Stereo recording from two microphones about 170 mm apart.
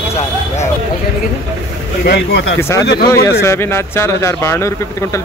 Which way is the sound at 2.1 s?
80° left.